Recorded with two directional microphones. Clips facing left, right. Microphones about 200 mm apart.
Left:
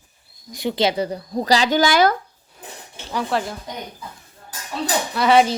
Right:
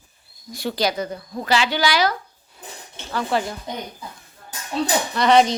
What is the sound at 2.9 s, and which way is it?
Speech, 10° left (ahead or behind).